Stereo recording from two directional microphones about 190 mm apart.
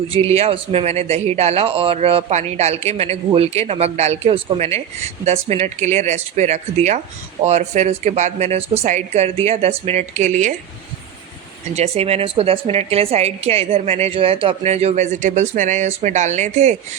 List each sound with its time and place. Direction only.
0.1 s a woman's voice: 30° right (ahead or behind)
11.7 s a woman's voice: 35° right (ahead or behind)